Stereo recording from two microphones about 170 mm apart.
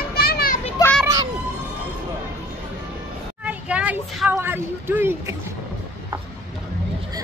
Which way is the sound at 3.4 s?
10° right (ahead or behind).